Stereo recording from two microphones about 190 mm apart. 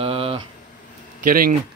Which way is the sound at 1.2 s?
50° right (ahead or behind).